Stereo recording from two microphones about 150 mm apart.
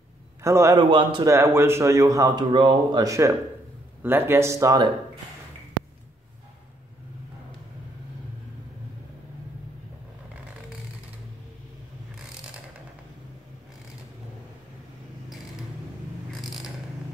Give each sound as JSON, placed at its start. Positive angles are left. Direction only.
{"t": 0.4, "sound": "a man's voice", "side_deg": -20}
{"t": 0.7, "sound": "a man's voice", "side_deg": -30}
{"t": 1.2, "sound": "a man's voice", "side_deg": -15}
{"t": 16.3, "sound": "mechanisms", "side_deg": 0}